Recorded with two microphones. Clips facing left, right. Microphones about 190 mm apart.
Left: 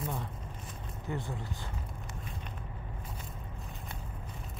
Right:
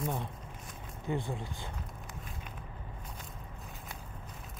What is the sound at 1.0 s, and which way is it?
Speech, 15° right (ahead or behind).